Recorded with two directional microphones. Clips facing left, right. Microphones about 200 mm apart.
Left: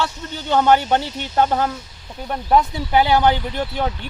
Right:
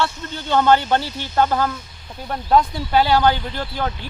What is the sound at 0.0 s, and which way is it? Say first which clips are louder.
Speech: right 1 dB; 15° left (ahead or behind).